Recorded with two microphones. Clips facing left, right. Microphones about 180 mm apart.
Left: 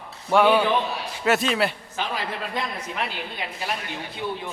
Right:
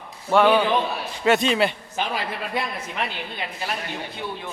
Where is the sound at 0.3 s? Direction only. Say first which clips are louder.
Right 1 dB; 10° left (ahead or behind).